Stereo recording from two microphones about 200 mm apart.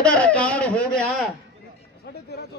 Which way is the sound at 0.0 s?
5° left (ahead or behind).